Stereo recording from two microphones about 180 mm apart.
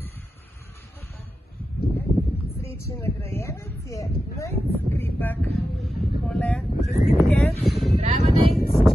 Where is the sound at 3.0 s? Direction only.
15° left (ahead or behind).